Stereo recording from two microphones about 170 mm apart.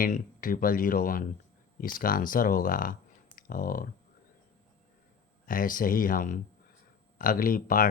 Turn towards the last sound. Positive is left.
turn(degrees=55)  # may be behind; listen again after turning